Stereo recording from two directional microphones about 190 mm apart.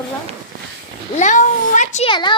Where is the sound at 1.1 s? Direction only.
40° left (ahead or behind).